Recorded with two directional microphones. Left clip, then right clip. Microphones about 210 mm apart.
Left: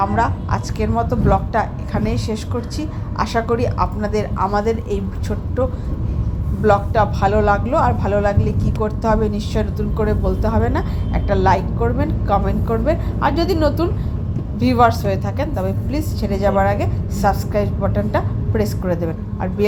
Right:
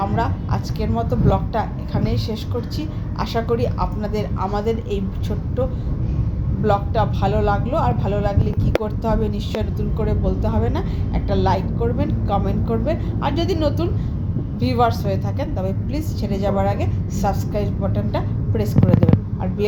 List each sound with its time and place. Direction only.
0.0 s speech: 15° left (ahead or behind)
6.7 s a woman's voice: 20° left (ahead or behind)